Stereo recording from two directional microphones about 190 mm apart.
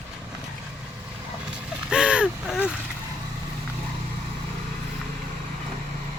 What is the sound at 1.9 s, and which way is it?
Vehicle, 5° right (ahead or behind).